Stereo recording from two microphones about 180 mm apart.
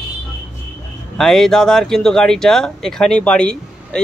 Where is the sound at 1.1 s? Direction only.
Centre (ahead or behind).